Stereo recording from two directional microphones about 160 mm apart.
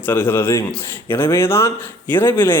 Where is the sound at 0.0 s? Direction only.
10° left (ahead or behind).